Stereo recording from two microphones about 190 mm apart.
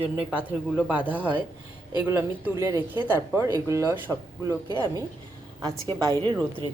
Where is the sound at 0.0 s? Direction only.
5° right (ahead or behind).